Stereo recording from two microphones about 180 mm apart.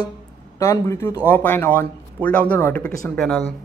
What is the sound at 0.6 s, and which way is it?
Speech, 15° left (ahead or behind).